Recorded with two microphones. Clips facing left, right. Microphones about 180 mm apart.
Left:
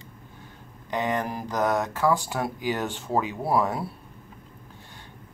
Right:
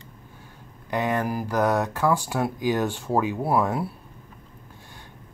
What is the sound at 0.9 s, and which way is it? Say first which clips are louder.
Speech: right 2 dB; 10° right (ahead or behind).